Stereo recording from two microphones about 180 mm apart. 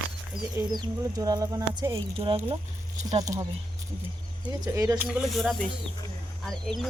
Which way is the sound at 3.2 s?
20° right (ahead or behind).